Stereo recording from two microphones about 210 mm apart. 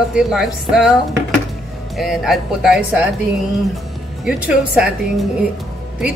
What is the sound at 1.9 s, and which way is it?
Speech, centre (ahead or behind).